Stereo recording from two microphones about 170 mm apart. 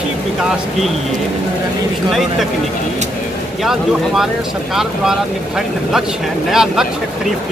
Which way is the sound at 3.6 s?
Centre (ahead or behind).